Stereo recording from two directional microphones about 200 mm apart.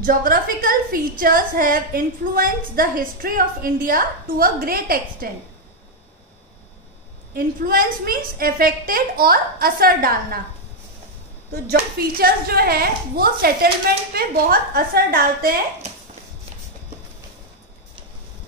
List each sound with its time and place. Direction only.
0.0 s a woman's voice: 45° right (ahead or behind)
7.3 s a woman's voice: 45° right (ahead or behind)
11.7 s a woman's voice: 50° right (ahead or behind)